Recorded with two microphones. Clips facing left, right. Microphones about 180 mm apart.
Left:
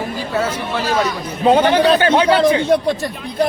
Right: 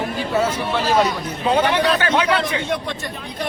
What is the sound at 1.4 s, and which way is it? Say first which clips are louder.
A man's voice: left 6 dB; 35° left (ahead or behind).